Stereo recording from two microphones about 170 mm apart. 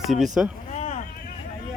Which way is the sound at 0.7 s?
45° left (ahead or behind).